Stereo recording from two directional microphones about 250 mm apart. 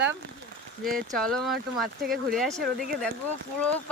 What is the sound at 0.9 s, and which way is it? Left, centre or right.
Speech, centre.